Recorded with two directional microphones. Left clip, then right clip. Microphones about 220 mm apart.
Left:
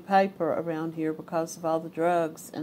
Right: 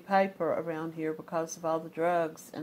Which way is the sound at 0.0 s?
Centre (ahead or behind).